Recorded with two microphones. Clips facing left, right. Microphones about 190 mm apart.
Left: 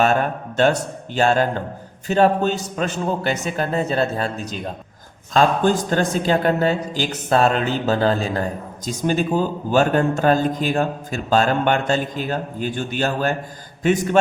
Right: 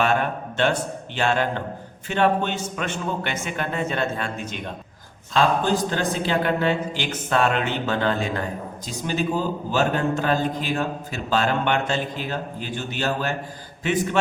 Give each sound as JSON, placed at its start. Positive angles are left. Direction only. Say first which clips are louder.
{"t": 0.0, "sound": "a man's voice", "louder": "left 3 dB", "side_deg": 40}
{"t": 5.3, "sound": "speech", "louder": "left 3 dB", "side_deg": 45}
{"t": 8.9, "sound": "a man's voice", "louder": "left 5 dB", "side_deg": 50}